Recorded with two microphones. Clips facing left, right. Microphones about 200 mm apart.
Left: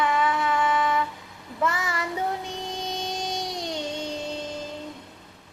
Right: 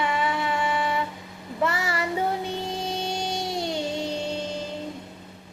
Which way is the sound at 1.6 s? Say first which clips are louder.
Right 1 dB; 30° right (ahead or behind).